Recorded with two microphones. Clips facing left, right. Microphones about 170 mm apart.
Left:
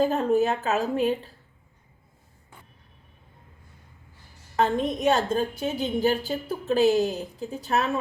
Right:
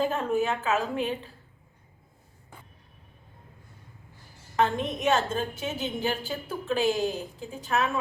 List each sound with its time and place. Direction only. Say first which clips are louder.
0.0 s a woman's voice: left 4 dB; 35° left (ahead or behind)
4.5 s a woman's voice: left 2 dB; 35° left (ahead or behind)